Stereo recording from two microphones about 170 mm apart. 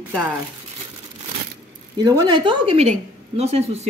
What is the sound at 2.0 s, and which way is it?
A woman's voice, 20° right (ahead or behind).